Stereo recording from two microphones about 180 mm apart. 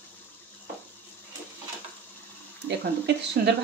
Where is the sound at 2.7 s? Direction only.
65° right (ahead or behind).